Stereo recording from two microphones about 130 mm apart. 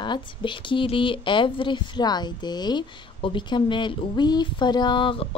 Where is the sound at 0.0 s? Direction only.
40° left (ahead or behind).